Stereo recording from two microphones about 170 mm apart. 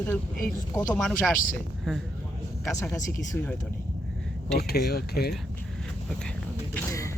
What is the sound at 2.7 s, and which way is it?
Speech, 15° left (ahead or behind).